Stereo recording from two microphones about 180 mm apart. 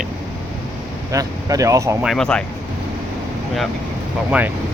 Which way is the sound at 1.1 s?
20° right (ahead or behind).